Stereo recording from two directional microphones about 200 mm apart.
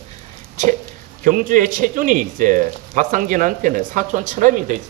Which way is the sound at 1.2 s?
40° right (ahead or behind).